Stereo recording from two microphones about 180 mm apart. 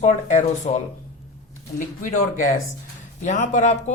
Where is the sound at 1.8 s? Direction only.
45° left (ahead or behind).